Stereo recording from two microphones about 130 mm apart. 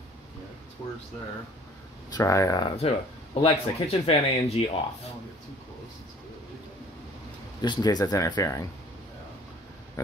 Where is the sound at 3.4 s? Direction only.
50° left (ahead or behind).